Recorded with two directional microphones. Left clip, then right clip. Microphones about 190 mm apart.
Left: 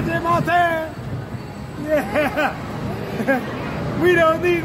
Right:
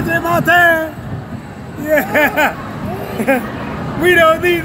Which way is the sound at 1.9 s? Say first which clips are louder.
Right 7 dB; centre (ahead or behind).